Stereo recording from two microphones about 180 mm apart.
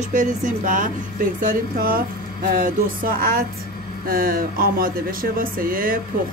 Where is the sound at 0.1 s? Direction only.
45° right (ahead or behind).